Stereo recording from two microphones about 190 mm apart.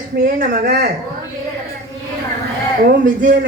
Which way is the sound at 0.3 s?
55° right (ahead or behind).